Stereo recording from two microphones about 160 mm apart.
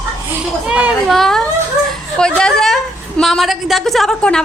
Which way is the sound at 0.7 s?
5° right (ahead or behind).